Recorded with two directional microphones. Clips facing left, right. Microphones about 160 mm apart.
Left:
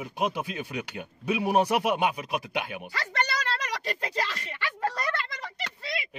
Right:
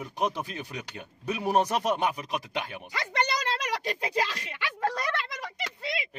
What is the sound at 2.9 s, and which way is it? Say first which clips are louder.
Speech: right 2 dB; 20° right (ahead or behind).